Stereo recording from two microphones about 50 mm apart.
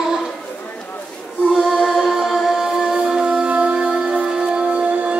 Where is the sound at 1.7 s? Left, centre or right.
Centre.